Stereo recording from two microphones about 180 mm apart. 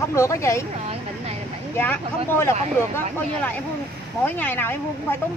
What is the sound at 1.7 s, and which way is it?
Speech, 10° left (ahead or behind).